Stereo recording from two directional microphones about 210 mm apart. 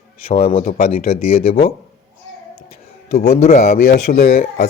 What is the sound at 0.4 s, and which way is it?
Speech, 30° left (ahead or behind).